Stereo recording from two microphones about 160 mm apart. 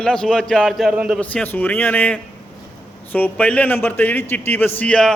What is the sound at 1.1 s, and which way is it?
A man's voice, 10° left (ahead or behind).